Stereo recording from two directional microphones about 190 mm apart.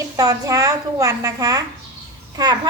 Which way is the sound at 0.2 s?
20° right (ahead or behind).